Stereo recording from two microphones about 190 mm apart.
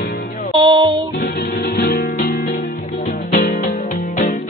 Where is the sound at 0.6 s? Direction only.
25° right (ahead or behind).